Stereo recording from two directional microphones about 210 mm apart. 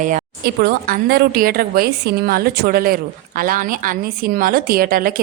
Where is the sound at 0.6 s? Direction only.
50° right (ahead or behind).